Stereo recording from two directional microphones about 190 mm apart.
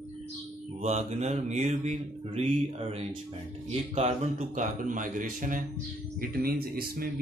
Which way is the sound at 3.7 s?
35° right (ahead or behind).